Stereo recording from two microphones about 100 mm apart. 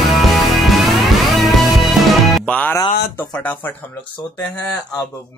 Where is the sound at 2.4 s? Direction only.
15° left (ahead or behind).